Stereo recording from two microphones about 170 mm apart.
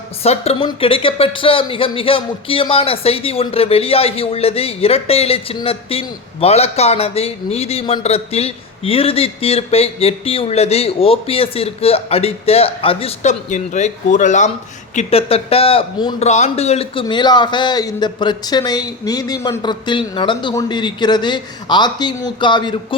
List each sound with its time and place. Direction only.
0.2 s speech: 35° left (ahead or behind)
14.9 s speech: 35° left (ahead or behind)
16.2 s a man's voice: 40° left (ahead or behind)